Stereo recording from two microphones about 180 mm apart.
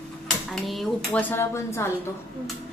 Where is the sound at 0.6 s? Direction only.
Centre (ahead or behind).